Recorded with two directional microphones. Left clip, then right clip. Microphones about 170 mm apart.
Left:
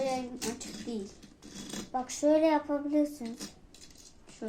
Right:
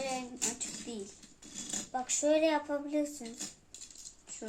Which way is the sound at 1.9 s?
20° right (ahead or behind).